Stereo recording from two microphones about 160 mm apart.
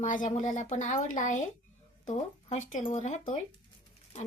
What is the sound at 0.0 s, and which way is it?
A woman's voice, 50° left (ahead or behind).